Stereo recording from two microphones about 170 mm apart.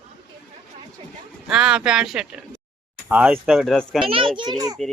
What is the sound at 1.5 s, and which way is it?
A child's voice, 5° right (ahead or behind).